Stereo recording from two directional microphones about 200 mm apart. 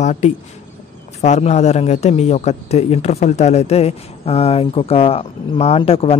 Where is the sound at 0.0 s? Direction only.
35° left (ahead or behind).